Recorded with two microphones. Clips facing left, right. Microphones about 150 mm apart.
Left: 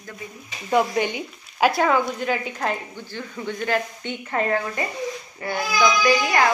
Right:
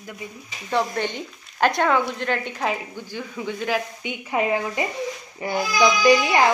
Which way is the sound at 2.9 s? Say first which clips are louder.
Right 2 dB; 10° right (ahead or behind).